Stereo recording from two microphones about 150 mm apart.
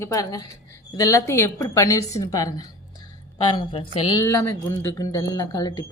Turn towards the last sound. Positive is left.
turn(degrees=25)  # may be behind; listen again after turning